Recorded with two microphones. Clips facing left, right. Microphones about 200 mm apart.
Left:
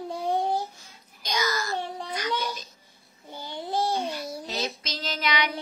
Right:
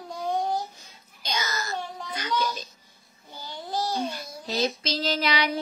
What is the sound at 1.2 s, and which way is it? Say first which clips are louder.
Speech: left 3 dB; 25° right (ahead or behind).